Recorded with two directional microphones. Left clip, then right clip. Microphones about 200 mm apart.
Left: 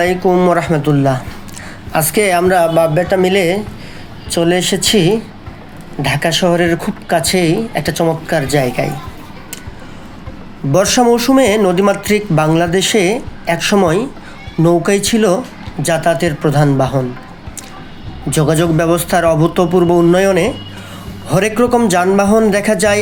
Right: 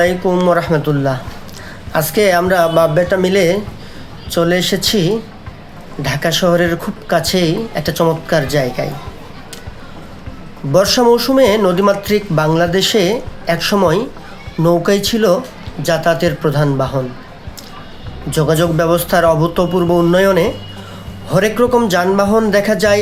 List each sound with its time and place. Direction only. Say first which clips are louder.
0.0 s speech: left 1 dB; 10° left (ahead or behind)
10.7 s speech: even; 10° left (ahead or behind)
18.3 s speech: even; 15° left (ahead or behind)